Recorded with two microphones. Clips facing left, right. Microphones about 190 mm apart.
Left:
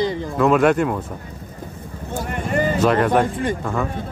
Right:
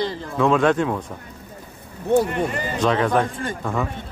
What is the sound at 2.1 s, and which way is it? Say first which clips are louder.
Speech: right 11 dB; 60° right (ahead or behind).